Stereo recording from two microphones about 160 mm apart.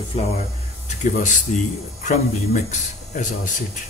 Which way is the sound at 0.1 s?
45° left (ahead or behind).